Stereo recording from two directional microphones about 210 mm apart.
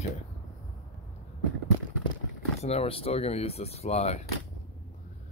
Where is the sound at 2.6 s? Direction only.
30° left (ahead or behind).